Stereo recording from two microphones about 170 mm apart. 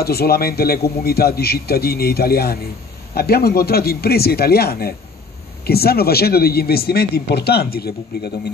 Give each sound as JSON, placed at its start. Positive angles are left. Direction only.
{"t": 0.0, "sound": "speech", "side_deg": 65}